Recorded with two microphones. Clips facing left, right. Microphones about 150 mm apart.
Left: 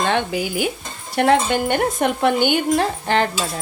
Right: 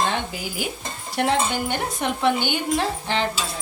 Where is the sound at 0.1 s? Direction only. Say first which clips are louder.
Left 7 dB; 75° left (ahead or behind).